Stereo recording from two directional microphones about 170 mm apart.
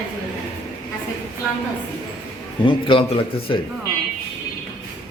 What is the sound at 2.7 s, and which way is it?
Speech, 30° left (ahead or behind).